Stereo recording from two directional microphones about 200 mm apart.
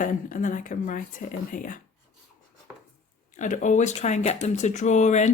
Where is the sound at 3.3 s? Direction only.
40° left (ahead or behind).